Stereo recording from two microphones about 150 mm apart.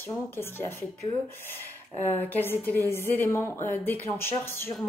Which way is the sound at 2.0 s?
15° left (ahead or behind).